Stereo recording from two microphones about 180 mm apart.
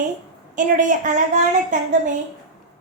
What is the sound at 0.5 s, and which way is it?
Speech, 45° right (ahead or behind).